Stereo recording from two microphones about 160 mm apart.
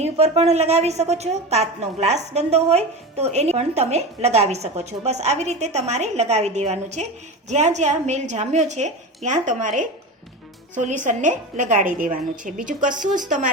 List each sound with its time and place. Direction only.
0.0 s a woman's voice: 40° right (ahead or behind)